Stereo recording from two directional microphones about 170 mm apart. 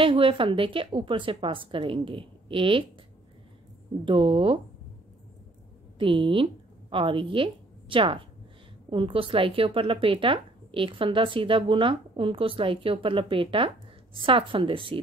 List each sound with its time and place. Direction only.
0.0 s speech: 30° right (ahead or behind)
4.0 s speech: 30° right (ahead or behind)
5.9 s a woman's voice: 30° right (ahead or behind)